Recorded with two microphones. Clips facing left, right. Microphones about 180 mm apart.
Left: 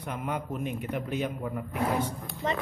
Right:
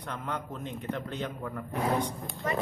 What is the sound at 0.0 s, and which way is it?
A man's voice, 10° left (ahead or behind).